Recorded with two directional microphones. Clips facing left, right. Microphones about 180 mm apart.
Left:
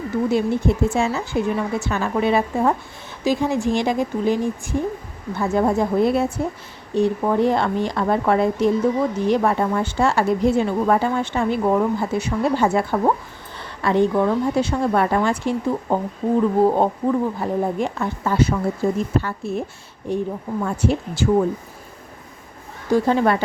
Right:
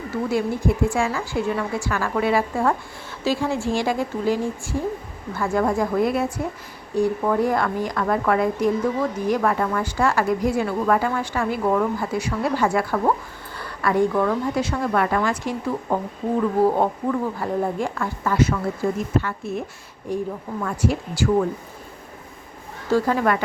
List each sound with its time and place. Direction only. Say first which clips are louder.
0.3 s a woman's voice: left 2 dB; 25° left (ahead or behind)
20.1 s a woman's voice: left 3 dB; 25° left (ahead or behind)
22.9 s a woman's voice: left 2 dB; 20° left (ahead or behind)